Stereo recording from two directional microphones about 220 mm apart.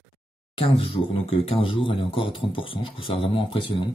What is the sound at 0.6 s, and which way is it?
Speech, 25° left (ahead or behind).